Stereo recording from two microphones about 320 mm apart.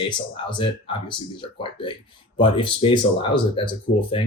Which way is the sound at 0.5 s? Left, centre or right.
Centre.